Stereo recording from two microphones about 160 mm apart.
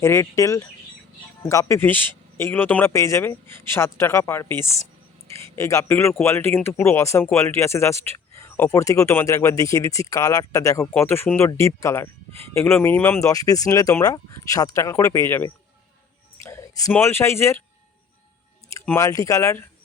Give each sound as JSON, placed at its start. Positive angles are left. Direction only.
{"t": 0.0, "sound": "a man's voice", "side_deg": 20}
{"t": 16.4, "sound": "a sound", "side_deg": 20}
{"t": 16.9, "sound": "a man's voice", "side_deg": 15}
{"t": 18.7, "sound": "speech", "side_deg": 20}